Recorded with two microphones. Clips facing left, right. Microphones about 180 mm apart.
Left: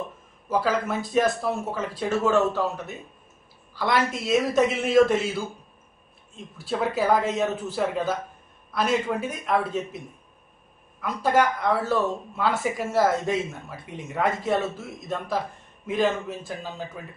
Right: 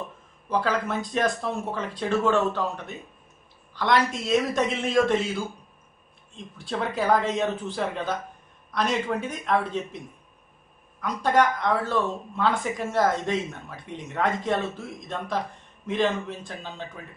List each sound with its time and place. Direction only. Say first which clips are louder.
0.5 s speech: left 1 dB; 5° left (ahead or behind)
6.3 s speech: left 2 dB; 5° left (ahead or behind)
11.0 s speech: even; 5° left (ahead or behind)